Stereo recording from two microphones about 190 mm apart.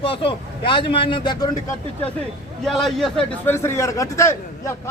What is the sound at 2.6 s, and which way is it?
Speech, centre (ahead or behind).